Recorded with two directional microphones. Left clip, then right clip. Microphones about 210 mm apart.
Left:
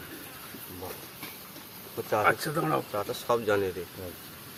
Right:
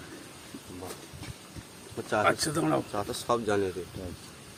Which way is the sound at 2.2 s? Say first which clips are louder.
Even; 40° right (ahead or behind).